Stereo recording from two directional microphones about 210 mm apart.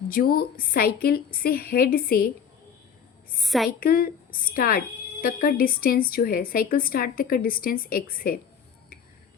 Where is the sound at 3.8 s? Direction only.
45° left (ahead or behind).